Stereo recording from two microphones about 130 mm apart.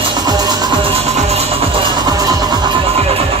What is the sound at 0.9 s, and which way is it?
Music, 55° right (ahead or behind).